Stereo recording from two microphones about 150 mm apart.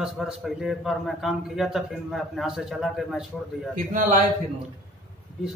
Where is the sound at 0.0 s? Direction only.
Centre (ahead or behind).